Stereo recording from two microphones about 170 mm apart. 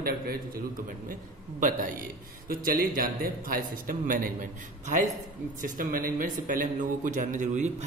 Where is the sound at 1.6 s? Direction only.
55° right (ahead or behind).